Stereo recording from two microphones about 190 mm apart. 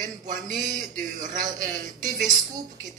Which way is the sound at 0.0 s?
40° right (ahead or behind).